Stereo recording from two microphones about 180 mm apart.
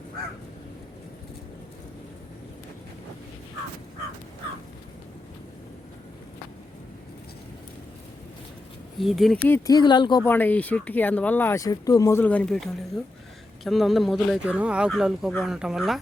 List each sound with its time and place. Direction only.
9.0 s speech: centre (ahead or behind)
9.5 s speech: 20° left (ahead or behind)
10.2 s speech: 10° left (ahead or behind)
13.7 s speech: centre (ahead or behind)